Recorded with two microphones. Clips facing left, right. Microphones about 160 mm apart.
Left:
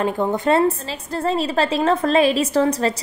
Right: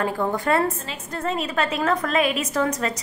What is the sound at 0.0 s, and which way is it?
A woman's voice, 20° left (ahead or behind).